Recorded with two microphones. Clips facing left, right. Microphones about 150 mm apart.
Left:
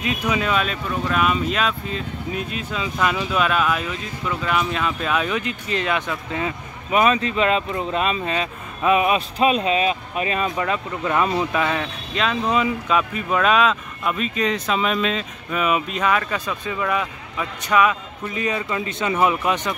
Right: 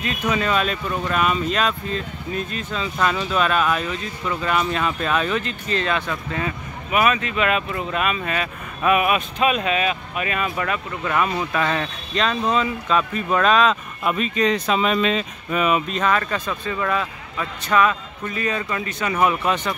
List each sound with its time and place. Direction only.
0.0 s speech: 10° left (ahead or behind); by 11.4 s 30° left (ahead or behind)
11.5 s speech: 10° left (ahead or behind)